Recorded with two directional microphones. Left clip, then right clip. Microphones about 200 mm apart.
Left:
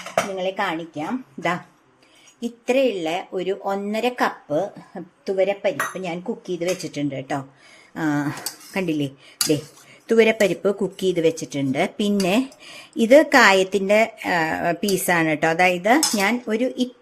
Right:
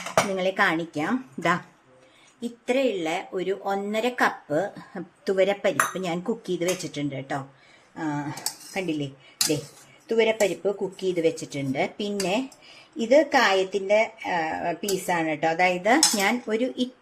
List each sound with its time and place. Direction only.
0.1 s speech: 10° right (ahead or behind)
1.4 s speech: centre (ahead or behind)
2.4 s speech: 20° left (ahead or behind)
5.4 s speech: 5° right (ahead or behind)
6.8 s speech: 15° left (ahead or behind)
7.9 s a woman's voice: 40° left (ahead or behind)
10.1 s a woman's voice: 35° left (ahead or behind); by 16.9 s 20° left (ahead or behind)